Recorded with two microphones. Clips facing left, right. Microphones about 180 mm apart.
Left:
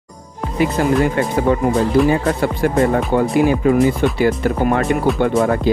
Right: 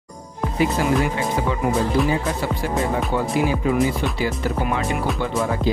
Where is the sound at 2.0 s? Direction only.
55° left (ahead or behind).